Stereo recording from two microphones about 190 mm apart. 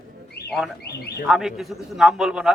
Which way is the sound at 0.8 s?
55° left (ahead or behind).